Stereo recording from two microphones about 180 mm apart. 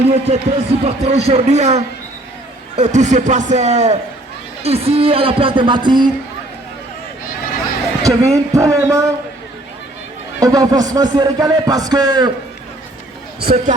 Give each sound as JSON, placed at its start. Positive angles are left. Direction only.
{"t": 0.1, "sound": "speech", "side_deg": -35}
{"t": 8.0, "sound": "speech", "side_deg": -20}
{"t": 10.4, "sound": "speech", "side_deg": -20}
{"t": 13.4, "sound": "speech", "side_deg": -55}